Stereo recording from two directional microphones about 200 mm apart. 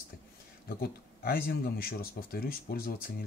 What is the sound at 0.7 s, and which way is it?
Speech, 45° left (ahead or behind).